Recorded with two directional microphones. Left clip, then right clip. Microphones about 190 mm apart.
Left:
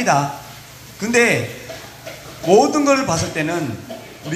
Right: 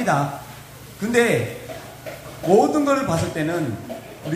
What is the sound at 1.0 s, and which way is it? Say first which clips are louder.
Speech: left 3 dB; 40° left (ahead or behind).